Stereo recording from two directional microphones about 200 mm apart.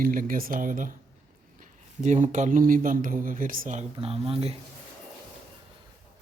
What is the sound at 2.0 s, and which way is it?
Speech, 35° right (ahead or behind).